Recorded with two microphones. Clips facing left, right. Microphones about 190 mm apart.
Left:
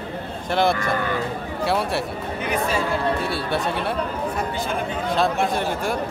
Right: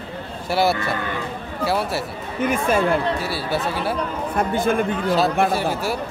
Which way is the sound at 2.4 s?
50° right (ahead or behind).